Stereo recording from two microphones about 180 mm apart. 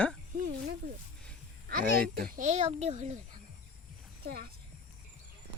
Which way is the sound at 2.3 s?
40° right (ahead or behind).